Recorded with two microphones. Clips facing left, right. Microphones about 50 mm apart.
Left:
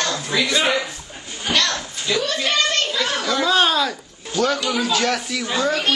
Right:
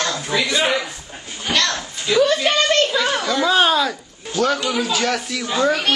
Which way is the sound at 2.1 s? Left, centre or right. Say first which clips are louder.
Right 5 dB; right.